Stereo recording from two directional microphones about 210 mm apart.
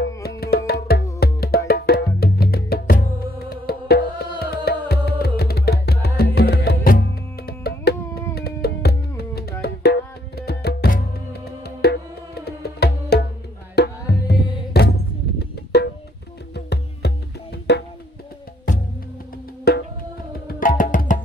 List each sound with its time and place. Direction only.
0.0 s music: 55° left (ahead or behind)
15.3 s drum: 50° left (ahead or behind)
16.5 s music: 50° left (ahead or behind)
19.7 s music: 50° left (ahead or behind)